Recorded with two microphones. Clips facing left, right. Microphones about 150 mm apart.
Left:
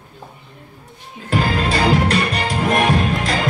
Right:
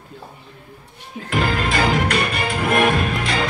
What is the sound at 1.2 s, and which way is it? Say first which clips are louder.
Music: left 2 dB; 35° left (ahead or behind).